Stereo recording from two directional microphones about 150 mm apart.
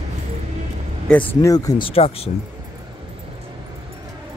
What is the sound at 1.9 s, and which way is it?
Speech, 40° left (ahead or behind).